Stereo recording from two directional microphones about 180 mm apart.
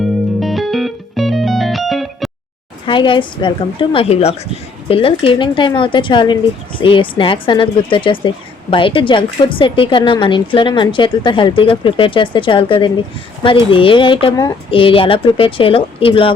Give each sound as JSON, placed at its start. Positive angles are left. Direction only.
{"t": 0.3, "sound": "music", "side_deg": 0}
{"t": 2.8, "sound": "a woman's voice", "side_deg": 25}